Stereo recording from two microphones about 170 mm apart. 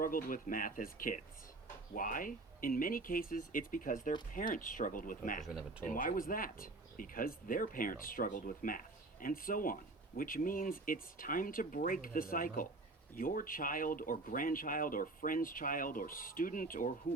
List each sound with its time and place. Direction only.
0.0 s speech: 55° left (ahead or behind)
5.4 s speech: centre (ahead or behind)
5.8 s speech: 55° left (ahead or behind)